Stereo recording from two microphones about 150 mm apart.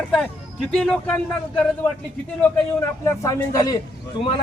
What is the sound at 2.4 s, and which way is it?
Speech, 20° left (ahead or behind).